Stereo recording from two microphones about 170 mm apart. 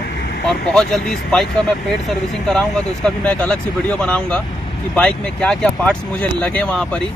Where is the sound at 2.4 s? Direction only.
5° left (ahead or behind).